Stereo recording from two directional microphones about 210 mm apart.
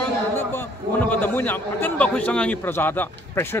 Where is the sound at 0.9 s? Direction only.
10° left (ahead or behind).